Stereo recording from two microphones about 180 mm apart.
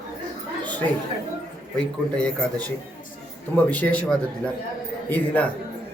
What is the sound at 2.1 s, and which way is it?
A man's voice, 5° left (ahead or behind).